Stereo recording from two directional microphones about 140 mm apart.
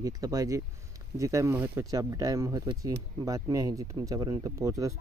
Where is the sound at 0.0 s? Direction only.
25° right (ahead or behind).